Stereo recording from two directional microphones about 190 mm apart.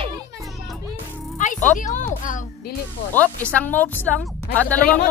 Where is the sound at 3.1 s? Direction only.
10° left (ahead or behind).